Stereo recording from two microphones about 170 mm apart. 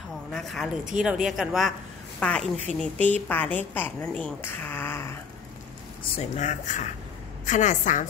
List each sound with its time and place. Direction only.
0.3 s a woman's voice: centre (ahead or behind)
6.1 s speech: 40° left (ahead or behind)